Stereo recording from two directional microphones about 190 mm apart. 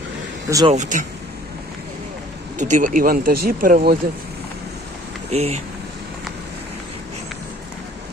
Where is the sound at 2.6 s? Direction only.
40° right (ahead or behind).